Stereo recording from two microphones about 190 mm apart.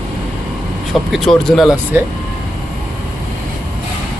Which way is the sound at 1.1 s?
Centre (ahead or behind).